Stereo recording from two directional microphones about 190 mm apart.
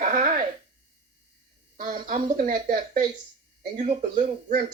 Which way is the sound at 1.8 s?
45° right (ahead or behind).